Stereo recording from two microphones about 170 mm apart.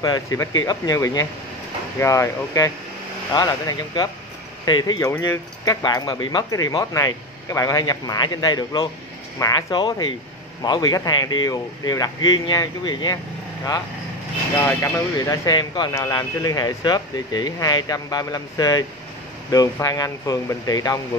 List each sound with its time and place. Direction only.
0.0 s speech: 20° left (ahead or behind)
14.6 s speech: 15° left (ahead or behind)